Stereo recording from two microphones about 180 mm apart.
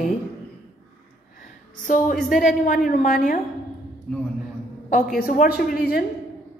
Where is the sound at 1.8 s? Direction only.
50° left (ahead or behind).